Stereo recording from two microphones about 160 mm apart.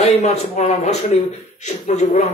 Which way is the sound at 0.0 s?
45° left (ahead or behind).